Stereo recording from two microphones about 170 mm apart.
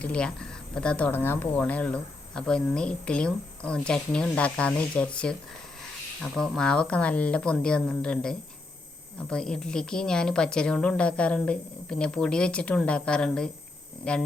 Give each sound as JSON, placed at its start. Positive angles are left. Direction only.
{"t": 0.0, "sound": "a woman's voice", "side_deg": 5}